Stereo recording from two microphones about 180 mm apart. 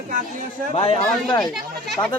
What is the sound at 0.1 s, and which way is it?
Speech, 45° right (ahead or behind).